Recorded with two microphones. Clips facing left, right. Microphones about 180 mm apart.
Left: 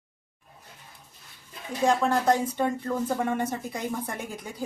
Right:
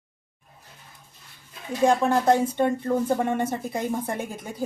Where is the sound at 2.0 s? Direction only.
30° right (ahead or behind).